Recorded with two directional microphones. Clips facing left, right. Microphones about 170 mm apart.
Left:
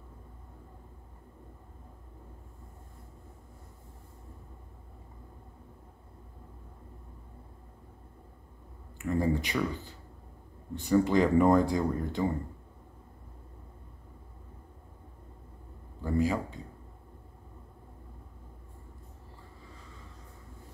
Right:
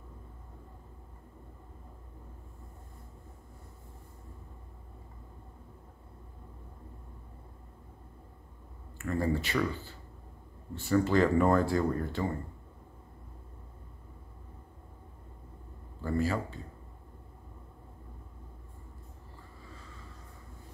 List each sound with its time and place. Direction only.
8.9 s speech: 15° left (ahead or behind)
10.7 s speech: 15° left (ahead or behind)
16.0 s speech: 15° left (ahead or behind)